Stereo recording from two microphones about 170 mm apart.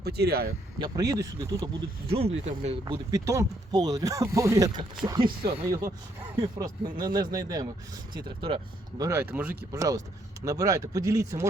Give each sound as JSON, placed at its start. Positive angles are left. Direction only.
{"t": 0.0, "sound": "speech", "side_deg": -70}
{"t": 0.8, "sound": "speech", "side_deg": -20}
{"t": 2.0, "sound": "speech", "side_deg": -35}
{"t": 2.9, "sound": "speech", "side_deg": -20}
{"t": 8.4, "sound": "speech", "side_deg": -35}
{"t": 9.0, "sound": "speech", "side_deg": -15}